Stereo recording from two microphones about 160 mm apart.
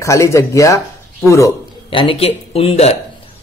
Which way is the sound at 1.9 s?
30° left (ahead or behind).